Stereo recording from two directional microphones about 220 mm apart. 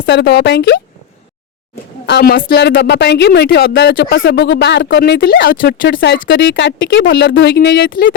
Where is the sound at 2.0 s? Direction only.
45° left (ahead or behind).